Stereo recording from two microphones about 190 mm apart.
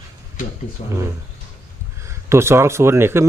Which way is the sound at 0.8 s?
30° left (ahead or behind).